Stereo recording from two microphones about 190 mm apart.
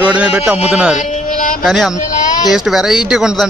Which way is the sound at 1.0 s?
40° left (ahead or behind).